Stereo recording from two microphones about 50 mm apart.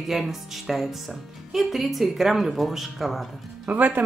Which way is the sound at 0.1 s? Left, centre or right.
Centre.